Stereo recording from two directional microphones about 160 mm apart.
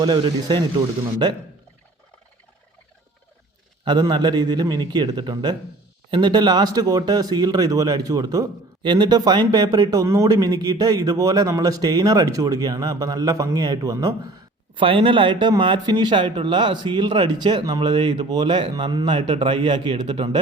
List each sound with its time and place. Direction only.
0.0 s speech: 25° right (ahead or behind)
3.8 s speech: 25° right (ahead or behind)
14.8 s speech: 35° right (ahead or behind)